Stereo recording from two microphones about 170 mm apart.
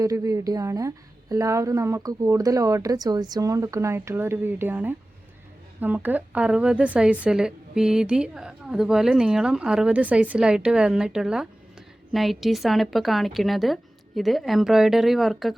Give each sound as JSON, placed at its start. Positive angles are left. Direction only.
{"t": 0.0, "sound": "a woman's voice", "side_deg": -20}